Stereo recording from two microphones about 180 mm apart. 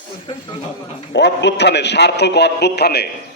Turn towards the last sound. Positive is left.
turn(degrees=60)  # may be behind; listen again after turning